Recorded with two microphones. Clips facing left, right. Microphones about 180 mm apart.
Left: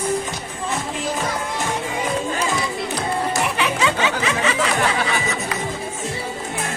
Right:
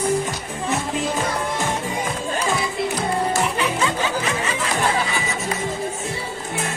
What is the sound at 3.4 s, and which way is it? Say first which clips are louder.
Music: left 1 dB; 80° left.